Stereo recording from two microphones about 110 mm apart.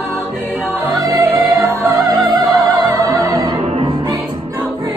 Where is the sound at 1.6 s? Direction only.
30° right (ahead or behind).